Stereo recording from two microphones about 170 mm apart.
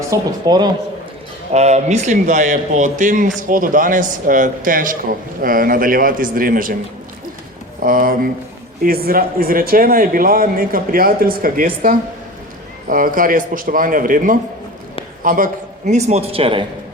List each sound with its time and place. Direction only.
0.1 s speech: 20° right (ahead or behind)
1.5 s a man's voice: 40° right (ahead or behind)
7.8 s a man's voice: 55° right (ahead or behind)
15.9 s speech: 40° right (ahead or behind)